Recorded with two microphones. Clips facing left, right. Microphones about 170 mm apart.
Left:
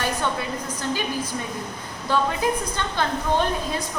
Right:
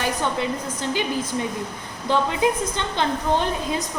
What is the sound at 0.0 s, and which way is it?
A woman's voice, 20° right (ahead or behind).